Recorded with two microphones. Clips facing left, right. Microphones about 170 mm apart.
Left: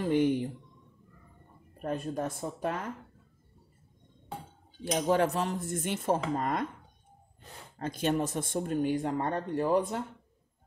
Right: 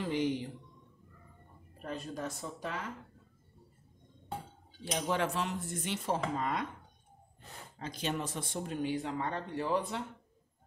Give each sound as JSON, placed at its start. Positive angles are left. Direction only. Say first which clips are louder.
{"t": 0.0, "sound": "speech", "louder": "left 6 dB", "side_deg": 55}
{"t": 1.8, "sound": "speech", "louder": "left 6 dB", "side_deg": 50}
{"t": 4.9, "sound": "speech", "louder": "left 6 dB", "side_deg": 40}
{"t": 7.8, "sound": "speech", "louder": "left 7 dB", "side_deg": 50}